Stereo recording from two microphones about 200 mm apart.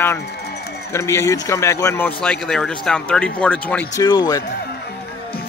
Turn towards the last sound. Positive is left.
turn(degrees=20)  # may be behind; listen again after turning